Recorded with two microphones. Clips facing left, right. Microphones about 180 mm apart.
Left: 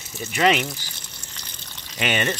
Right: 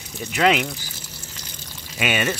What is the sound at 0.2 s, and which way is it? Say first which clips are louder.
Speech: right 1 dB; 5° left (ahead or behind).